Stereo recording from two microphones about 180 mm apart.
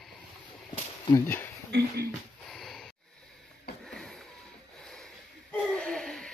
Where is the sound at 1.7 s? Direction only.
65° right (ahead or behind).